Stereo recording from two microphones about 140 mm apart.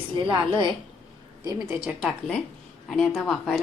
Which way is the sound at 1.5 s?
5° right (ahead or behind).